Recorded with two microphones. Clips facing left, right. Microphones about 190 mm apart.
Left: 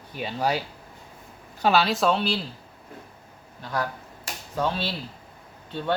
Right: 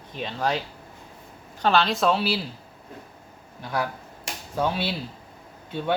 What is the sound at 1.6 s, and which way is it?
Speech, 5° left (ahead or behind).